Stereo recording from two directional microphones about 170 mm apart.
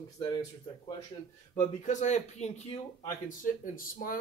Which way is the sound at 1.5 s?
45° left (ahead or behind).